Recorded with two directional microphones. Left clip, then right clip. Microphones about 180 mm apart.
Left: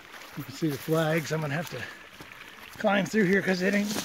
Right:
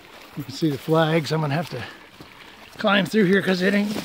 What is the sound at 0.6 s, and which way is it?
Speech, 10° right (ahead or behind).